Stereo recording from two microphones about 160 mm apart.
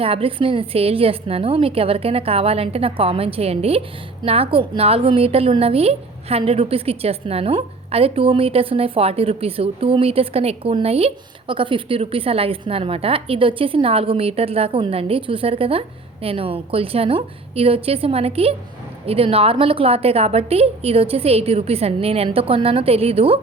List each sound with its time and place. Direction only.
0.0 s a woman's voice: 35° right (ahead or behind)